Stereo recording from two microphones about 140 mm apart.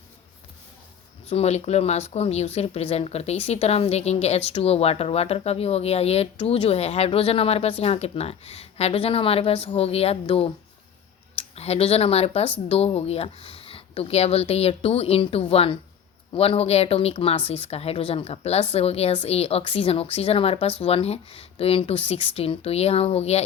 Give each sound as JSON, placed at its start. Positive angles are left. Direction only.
{"t": 1.3, "sound": "speech", "side_deg": 50}